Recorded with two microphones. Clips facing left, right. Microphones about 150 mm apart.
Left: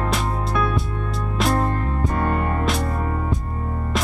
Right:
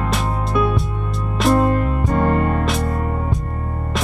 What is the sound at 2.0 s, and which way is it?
Music, 20° right (ahead or behind).